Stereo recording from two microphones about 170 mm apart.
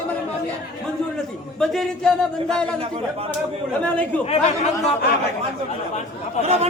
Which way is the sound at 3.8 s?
10° left (ahead or behind).